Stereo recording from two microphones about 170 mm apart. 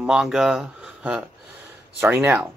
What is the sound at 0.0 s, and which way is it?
Speech, 5° right (ahead or behind).